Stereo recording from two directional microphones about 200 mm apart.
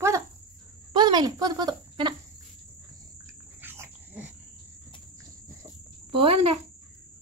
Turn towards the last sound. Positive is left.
turn(degrees=-25)  # may be behind; listen again after turning